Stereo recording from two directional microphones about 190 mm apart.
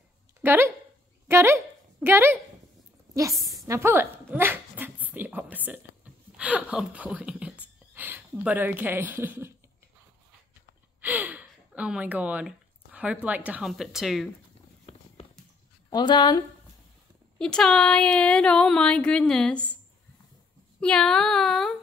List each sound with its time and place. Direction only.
0.4 s speech: 10° right (ahead or behind)
1.2 s a sound: 10° right (ahead or behind)
3.3 s a sound: centre (ahead or behind)
3.6 s dog: 15° right (ahead or behind)
6.3 s speech: 5° right (ahead or behind)
11.0 s speech: 10° right (ahead or behind)
14.9 s a sound: 30° left (ahead or behind)
15.9 s a woman's voice: 20° left (ahead or behind)
17.4 s speech: 5° left (ahead or behind)
20.8 s speech: 5° left (ahead or behind)